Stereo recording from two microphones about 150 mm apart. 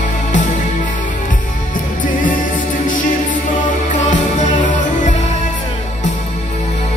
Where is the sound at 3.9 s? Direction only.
55° left (ahead or behind).